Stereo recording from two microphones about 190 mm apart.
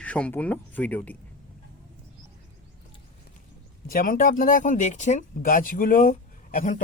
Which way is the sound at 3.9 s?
50° left (ahead or behind).